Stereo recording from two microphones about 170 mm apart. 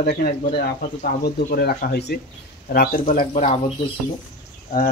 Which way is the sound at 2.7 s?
55° left (ahead or behind).